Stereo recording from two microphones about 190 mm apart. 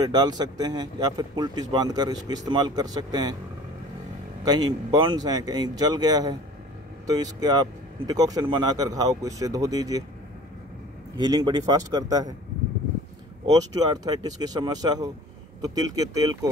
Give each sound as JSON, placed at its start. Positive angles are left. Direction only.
{"t": 0.0, "sound": "speech", "side_deg": -20}
{"t": 4.5, "sound": "speech", "side_deg": -20}
{"t": 11.1, "sound": "speech", "side_deg": -20}
{"t": 13.5, "sound": "speech", "side_deg": -20}